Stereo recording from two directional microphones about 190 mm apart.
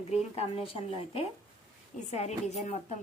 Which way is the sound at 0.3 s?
30° left (ahead or behind).